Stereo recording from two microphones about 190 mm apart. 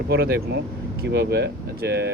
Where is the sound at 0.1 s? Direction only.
55° right (ahead or behind).